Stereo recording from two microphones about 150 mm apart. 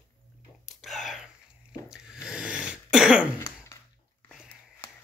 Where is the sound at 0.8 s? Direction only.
Centre (ahead or behind).